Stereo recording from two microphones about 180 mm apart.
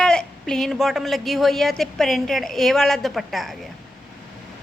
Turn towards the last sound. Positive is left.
turn(degrees=0)  # may be behind; listen again after turning